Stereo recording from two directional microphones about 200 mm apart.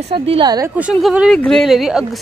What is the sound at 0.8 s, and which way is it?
Speech, centre (ahead or behind).